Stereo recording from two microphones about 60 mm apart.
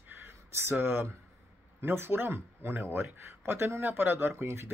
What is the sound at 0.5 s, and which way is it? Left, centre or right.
Speech, right.